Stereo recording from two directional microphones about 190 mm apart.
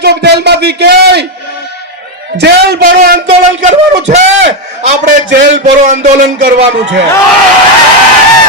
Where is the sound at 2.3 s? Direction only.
60° right (ahead or behind).